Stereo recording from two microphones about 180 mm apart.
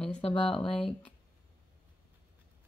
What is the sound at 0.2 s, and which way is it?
Speech, 30° left (ahead or behind).